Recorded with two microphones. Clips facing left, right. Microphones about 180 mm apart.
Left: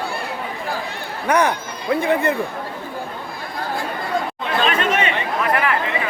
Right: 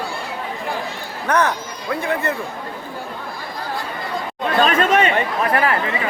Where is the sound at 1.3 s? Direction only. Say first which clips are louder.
Left 1 dB; 10° left (ahead or behind).